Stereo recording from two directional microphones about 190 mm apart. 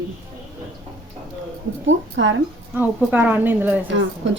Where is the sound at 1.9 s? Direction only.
75° right (ahead or behind).